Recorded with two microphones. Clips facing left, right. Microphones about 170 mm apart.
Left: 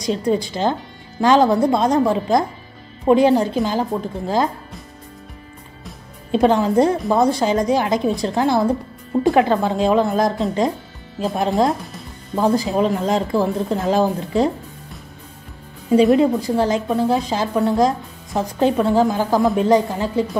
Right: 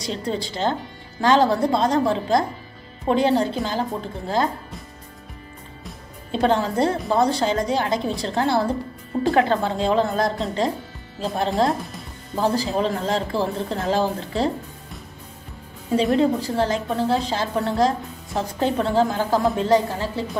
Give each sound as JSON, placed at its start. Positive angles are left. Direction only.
{"t": 0.0, "sound": "a woman's voice", "side_deg": 15}
{"t": 6.3, "sound": "a woman's voice", "side_deg": 15}
{"t": 15.9, "sound": "a woman's voice", "side_deg": 15}